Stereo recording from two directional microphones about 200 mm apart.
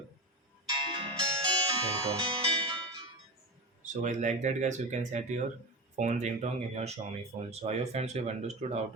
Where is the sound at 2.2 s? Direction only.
25° right (ahead or behind).